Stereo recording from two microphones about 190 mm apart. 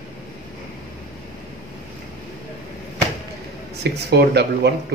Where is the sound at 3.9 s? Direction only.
60° right (ahead or behind).